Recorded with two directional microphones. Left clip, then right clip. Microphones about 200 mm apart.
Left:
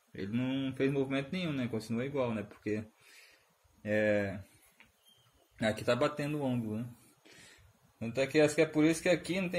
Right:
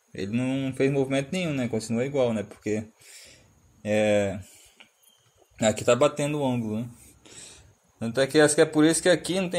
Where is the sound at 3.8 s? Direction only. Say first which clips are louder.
Right 8 dB; 20° right (ahead or behind).